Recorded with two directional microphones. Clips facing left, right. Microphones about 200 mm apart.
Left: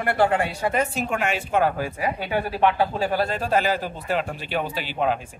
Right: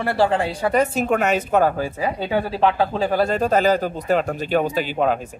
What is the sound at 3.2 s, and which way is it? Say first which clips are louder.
Speech: right 7 dB; 40° right (ahead or behind).